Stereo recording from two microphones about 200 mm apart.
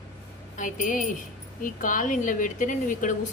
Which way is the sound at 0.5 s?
40° left (ahead or behind).